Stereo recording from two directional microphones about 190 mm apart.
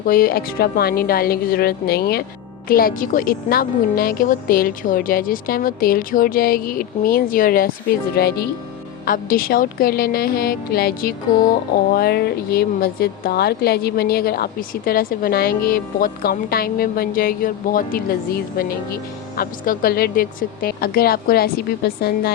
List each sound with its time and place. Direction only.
0.0 s speech: 50° left (ahead or behind)